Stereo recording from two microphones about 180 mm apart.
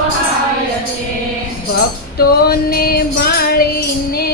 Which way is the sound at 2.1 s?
60° left (ahead or behind).